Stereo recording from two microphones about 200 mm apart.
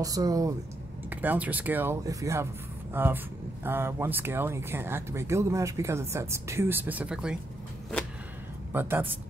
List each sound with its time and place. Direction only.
0.0 s speech: 20° right (ahead or behind)
8.7 s speech: 10° right (ahead or behind)